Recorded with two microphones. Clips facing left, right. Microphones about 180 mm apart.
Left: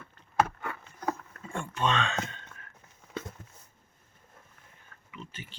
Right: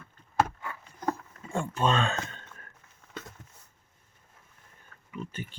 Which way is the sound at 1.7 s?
35° right (ahead or behind).